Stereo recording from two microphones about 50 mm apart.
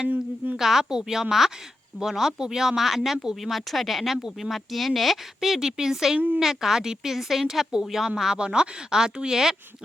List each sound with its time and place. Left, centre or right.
0.5 s speech: centre
6.1 s a woman's voice: right
6.4 s speech: centre